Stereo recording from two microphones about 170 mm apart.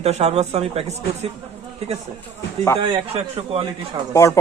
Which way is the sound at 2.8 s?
35° right (ahead or behind).